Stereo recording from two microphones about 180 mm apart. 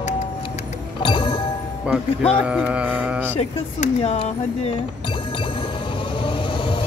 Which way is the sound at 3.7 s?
35° left (ahead or behind).